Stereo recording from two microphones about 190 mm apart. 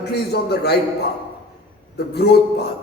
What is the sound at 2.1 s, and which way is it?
Speech, 60° left (ahead or behind).